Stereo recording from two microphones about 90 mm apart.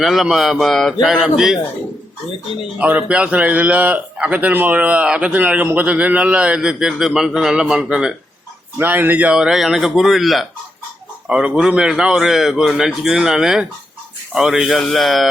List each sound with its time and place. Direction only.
0.0 s a man's voice: centre (ahead or behind)
2.7 s a man's voice: 15° right (ahead or behind)
8.8 s a man's voice: 20° right (ahead or behind); by 15.3 s centre (ahead or behind)